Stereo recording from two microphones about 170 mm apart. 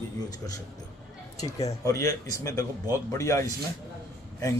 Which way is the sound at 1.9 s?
20° left (ahead or behind).